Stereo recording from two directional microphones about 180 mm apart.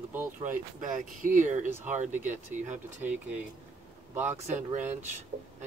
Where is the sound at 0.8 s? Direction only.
45° right (ahead or behind).